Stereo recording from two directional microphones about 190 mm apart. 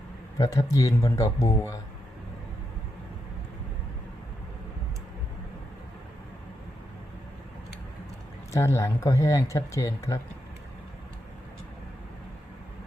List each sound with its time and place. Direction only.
0.3 s speech: 20° left (ahead or behind)
8.5 s speech: 15° left (ahead or behind)